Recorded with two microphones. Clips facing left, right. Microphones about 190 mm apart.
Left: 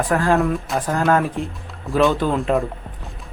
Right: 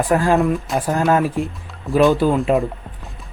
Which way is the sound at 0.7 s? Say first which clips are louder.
Right 1 dB; 10° right (ahead or behind).